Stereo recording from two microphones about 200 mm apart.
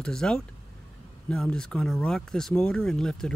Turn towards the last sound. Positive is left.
turn(degrees=0)  # may be behind; listen again after turning